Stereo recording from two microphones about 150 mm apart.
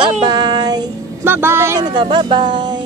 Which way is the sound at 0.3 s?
30° right (ahead or behind).